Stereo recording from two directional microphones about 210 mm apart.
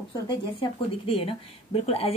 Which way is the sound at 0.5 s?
25° left (ahead or behind).